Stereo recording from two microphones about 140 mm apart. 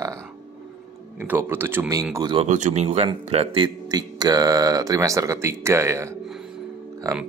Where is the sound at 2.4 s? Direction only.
60° right (ahead or behind); by 3.7 s 45° right (ahead or behind).